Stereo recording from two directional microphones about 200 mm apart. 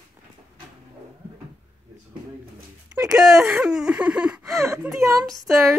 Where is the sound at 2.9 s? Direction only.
15° right (ahead or behind).